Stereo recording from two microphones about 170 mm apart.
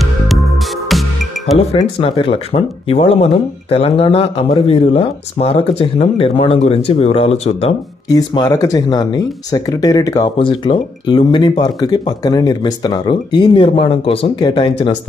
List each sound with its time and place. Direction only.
1.8 s speech: 30° left (ahead or behind)
8.1 s speech: 20° left (ahead or behind)